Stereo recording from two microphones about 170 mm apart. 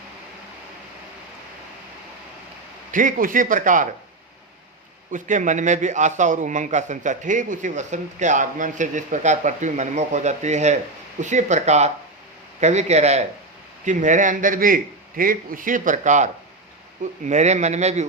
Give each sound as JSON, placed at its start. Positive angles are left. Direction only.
{"t": 2.9, "sound": "a man's voice", "side_deg": -50}
{"t": 5.1, "sound": "a man's voice", "side_deg": -45}